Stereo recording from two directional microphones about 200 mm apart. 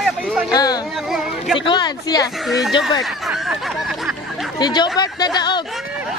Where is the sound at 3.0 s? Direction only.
Centre (ahead or behind).